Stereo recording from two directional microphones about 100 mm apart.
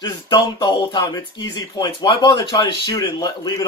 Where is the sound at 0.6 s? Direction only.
50° left (ahead or behind).